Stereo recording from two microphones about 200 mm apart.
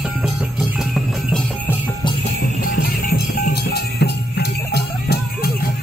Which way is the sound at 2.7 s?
45° left (ahead or behind).